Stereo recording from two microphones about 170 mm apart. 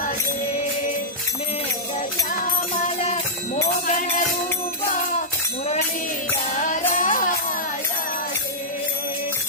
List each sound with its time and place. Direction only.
3.8 s music: 45° left (ahead or behind)
6.5 s music: 50° left (ahead or behind)